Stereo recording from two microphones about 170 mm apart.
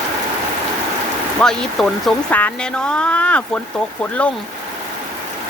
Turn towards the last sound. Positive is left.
turn(degrees=5)  # may be behind; listen again after turning